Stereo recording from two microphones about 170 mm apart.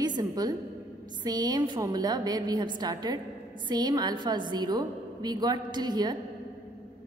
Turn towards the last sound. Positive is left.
turn(degrees=-25)  # may be behind; listen again after turning